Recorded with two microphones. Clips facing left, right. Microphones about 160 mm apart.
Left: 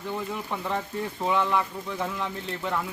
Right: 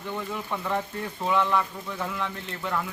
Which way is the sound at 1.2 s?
10° left (ahead or behind).